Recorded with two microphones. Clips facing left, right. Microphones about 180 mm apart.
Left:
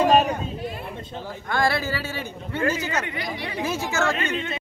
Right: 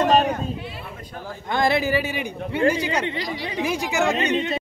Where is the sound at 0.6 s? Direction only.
45° left (ahead or behind).